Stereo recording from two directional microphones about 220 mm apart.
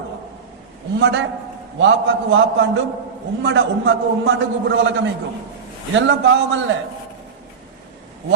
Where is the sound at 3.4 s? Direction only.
50° right (ahead or behind).